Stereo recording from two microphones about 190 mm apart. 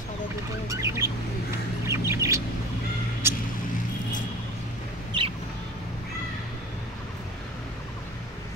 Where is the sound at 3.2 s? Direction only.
10° right (ahead or behind).